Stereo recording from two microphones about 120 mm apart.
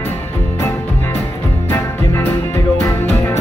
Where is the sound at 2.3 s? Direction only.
25° left (ahead or behind).